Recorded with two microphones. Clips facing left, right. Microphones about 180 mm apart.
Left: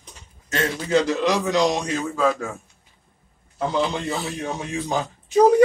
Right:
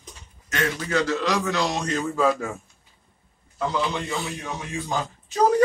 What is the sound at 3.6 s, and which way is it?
A man's voice, 30° left (ahead or behind).